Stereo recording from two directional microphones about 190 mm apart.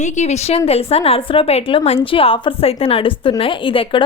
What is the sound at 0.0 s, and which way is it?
A woman's voice, 35° left (ahead or behind).